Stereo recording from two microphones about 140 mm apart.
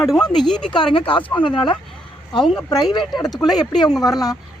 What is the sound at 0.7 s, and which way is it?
Speech, 35° left (ahead or behind).